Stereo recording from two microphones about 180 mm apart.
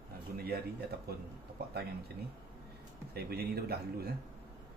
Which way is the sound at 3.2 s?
60° right (ahead or behind).